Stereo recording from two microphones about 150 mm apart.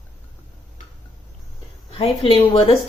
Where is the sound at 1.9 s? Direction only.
35° left (ahead or behind).